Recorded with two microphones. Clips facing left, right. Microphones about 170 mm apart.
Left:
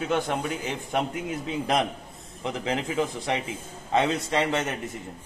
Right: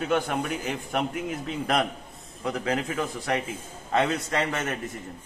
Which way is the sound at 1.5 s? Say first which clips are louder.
Left 1 dB; 20° left (ahead or behind).